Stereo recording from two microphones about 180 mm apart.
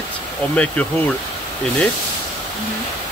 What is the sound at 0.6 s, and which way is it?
Speech, 10° left (ahead or behind).